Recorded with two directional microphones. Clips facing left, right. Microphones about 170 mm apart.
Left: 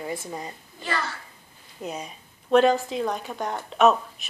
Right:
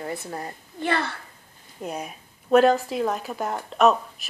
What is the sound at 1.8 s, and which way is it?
A woman's voice, 5° right (ahead or behind).